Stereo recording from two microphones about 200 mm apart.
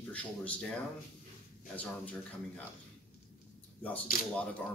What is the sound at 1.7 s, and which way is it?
Speech, 5° left (ahead or behind).